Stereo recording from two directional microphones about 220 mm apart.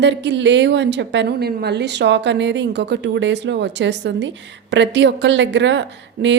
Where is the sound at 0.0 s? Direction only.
55° right (ahead or behind).